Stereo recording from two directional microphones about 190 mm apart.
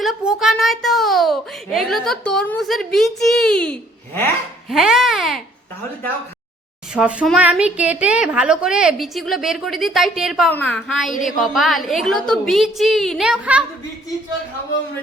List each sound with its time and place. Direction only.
0.0 s a child's voice: centre (ahead or behind)
4.7 s a child's voice: centre (ahead or behind)
6.9 s a child's voice: 5° right (ahead or behind)